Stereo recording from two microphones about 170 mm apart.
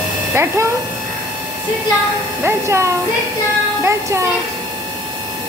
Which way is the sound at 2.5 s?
15° right (ahead or behind).